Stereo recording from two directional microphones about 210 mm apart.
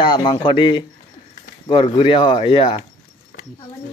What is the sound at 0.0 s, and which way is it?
Speech, 20° left (ahead or behind).